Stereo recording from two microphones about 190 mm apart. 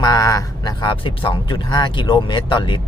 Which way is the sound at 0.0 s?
20° left (ahead or behind).